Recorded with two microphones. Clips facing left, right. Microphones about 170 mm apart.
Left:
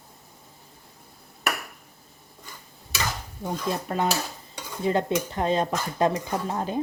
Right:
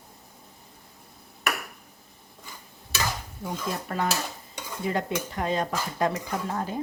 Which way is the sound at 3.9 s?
20° left (ahead or behind).